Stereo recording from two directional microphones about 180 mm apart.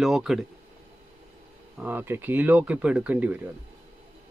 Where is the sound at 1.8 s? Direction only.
10° right (ahead or behind).